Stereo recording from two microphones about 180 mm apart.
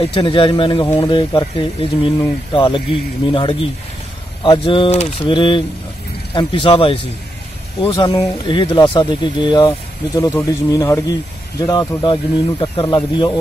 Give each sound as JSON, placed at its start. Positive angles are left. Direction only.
{"t": 0.0, "sound": "speech", "side_deg": 30}